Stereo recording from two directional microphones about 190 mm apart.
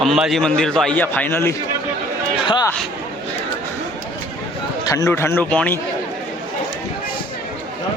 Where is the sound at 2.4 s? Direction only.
25° left (ahead or behind).